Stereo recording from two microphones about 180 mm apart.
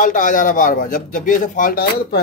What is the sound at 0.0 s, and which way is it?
A man's voice, 50° left (ahead or behind).